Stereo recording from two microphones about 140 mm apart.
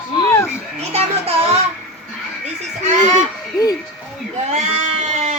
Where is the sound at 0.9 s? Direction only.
45° right (ahead or behind).